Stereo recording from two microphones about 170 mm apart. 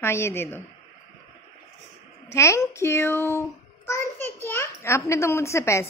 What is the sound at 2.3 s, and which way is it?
A child's voice, 15° left (ahead or behind).